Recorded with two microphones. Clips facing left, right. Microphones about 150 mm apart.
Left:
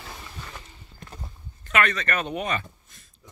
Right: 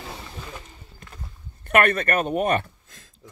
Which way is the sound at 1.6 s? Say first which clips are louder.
Right 5 dB; 55° right (ahead or behind).